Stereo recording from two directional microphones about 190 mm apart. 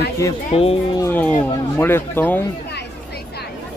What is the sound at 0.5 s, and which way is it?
Speech, 30° left (ahead or behind).